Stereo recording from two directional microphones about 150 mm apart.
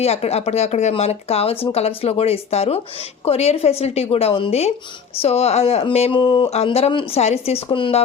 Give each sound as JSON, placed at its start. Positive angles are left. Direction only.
{"t": 0.0, "sound": "speech", "side_deg": 45}
{"t": 6.5, "sound": "speech", "side_deg": 45}